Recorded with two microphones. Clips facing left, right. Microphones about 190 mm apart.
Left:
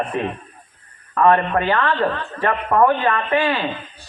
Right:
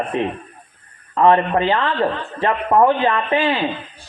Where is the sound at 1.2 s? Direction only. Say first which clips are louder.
Right 1 dB; 20° right (ahead or behind).